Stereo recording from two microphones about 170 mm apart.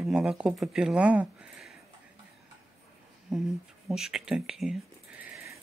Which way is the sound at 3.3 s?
5° right (ahead or behind).